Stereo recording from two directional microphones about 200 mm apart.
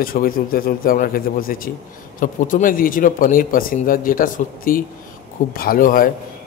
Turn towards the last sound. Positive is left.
turn(degrees=45)  # may be behind; listen again after turning